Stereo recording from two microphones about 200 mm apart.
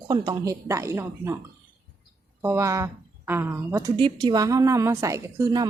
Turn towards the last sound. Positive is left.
turn(degrees=-15)  # may be behind; listen again after turning